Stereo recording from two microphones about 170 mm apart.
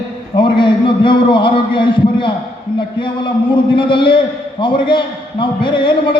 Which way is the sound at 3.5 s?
30° left (ahead or behind).